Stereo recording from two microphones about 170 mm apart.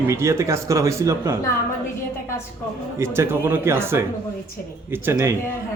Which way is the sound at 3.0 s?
15° right (ahead or behind).